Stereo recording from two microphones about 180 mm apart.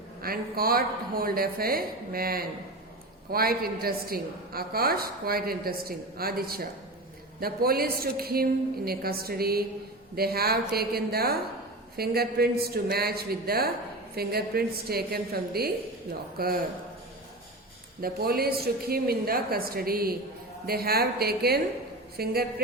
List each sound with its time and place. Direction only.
0.2 s a woman's voice: 55° right (ahead or behind)
18.0 s a woman's voice: 55° right (ahead or behind)